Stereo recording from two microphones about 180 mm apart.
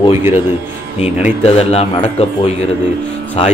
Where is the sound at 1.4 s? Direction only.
35° left (ahead or behind).